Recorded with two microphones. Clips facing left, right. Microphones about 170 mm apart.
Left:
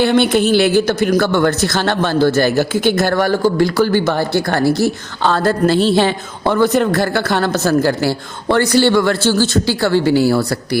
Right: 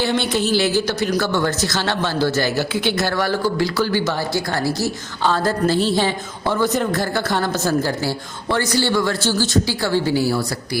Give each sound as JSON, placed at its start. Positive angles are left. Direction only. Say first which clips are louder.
{"t": 0.0, "sound": "speech", "louder": "left 7 dB", "side_deg": 60}